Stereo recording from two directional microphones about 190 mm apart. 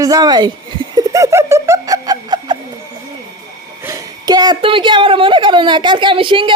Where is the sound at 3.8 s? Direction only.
20° right (ahead or behind).